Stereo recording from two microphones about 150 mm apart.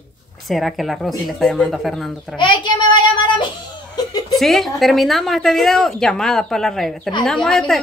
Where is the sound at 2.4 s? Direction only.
30° left (ahead or behind).